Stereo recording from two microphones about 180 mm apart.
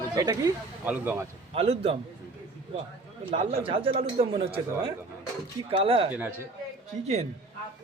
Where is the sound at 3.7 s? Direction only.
30° right (ahead or behind).